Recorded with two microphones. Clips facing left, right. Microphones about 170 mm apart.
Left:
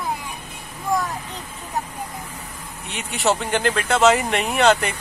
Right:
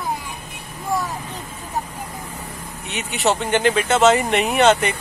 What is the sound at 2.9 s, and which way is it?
Speech, centre (ahead or behind).